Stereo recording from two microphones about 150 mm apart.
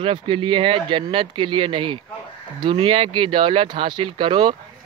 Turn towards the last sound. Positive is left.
turn(degrees=-35)  # may be behind; listen again after turning